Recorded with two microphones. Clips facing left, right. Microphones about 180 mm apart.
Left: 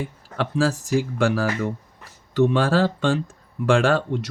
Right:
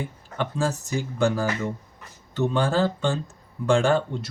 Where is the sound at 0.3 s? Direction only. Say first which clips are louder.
Left 4 dB; 85° left.